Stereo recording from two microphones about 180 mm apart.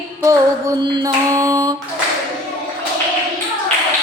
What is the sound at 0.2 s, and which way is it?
Female singing, 20° right (ahead or behind).